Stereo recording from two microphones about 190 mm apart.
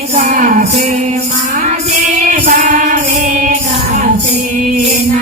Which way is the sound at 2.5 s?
45° right (ahead or behind).